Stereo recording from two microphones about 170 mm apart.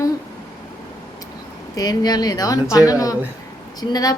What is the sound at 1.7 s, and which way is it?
A woman's voice, 25° left (ahead or behind).